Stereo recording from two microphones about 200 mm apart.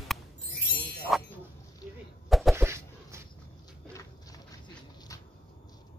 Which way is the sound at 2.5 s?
15° right (ahead or behind).